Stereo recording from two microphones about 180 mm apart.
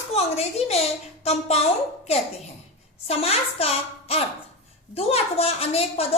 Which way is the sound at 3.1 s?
35° left (ahead or behind).